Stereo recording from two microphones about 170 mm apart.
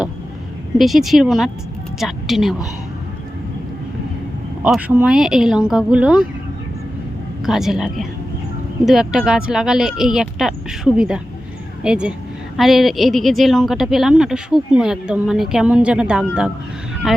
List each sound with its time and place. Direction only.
0.8 s a woman's voice: centre (ahead or behind)
4.6 s a woman's voice: 10° right (ahead or behind)
7.4 s a woman's voice: centre (ahead or behind)